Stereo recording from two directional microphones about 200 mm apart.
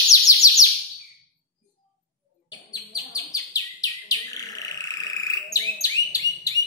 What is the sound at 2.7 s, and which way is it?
Chirp, 20° left (ahead or behind).